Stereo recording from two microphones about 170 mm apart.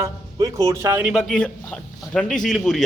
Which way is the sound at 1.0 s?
Centre (ahead or behind).